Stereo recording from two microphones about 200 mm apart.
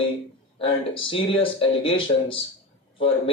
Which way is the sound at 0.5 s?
25° left (ahead or behind).